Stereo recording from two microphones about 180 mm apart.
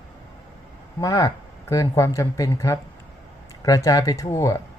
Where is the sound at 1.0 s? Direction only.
20° left (ahead or behind).